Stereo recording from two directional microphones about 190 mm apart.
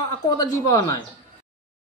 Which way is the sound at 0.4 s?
20° left (ahead or behind).